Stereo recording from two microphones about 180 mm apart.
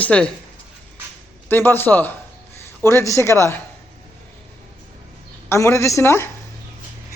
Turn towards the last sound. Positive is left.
turn(degrees=15)  # may be behind; listen again after turning